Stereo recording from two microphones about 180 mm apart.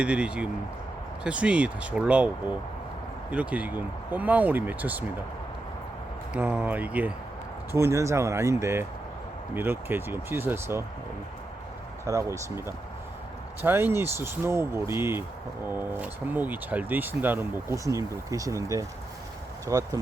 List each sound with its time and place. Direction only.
0.0 s speech: 5° right (ahead or behind)
6.3 s speech: 10° right (ahead or behind)
12.0 s speech: 15° right (ahead or behind)